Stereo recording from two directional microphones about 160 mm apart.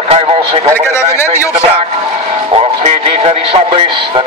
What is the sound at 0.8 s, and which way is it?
Speech, 15° left (ahead or behind).